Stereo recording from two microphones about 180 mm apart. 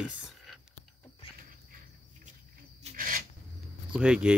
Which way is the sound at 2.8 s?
50° right (ahead or behind).